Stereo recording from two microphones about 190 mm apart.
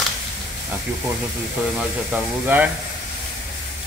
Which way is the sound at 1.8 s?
10° right (ahead or behind).